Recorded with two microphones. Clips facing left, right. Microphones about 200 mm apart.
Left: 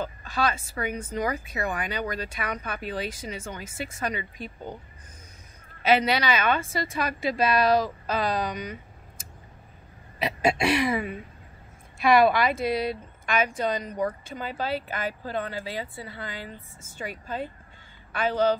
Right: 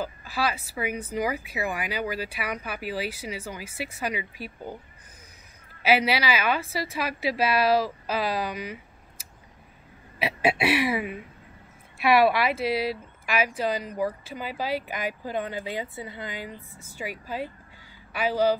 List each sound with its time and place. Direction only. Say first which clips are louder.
0.0 s speech: left 1 dB; 5° right (ahead or behind)
5.8 s speech: left 1 dB; 5° right (ahead or behind)
10.1 s speech: even; 5° right (ahead or behind)